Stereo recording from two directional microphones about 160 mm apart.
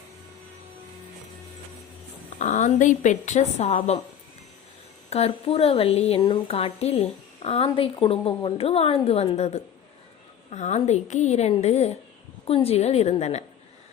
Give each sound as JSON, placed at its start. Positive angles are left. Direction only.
{"t": 2.4, "sound": "a woman's voice", "side_deg": 50}
{"t": 5.1, "sound": "a woman's voice", "side_deg": 40}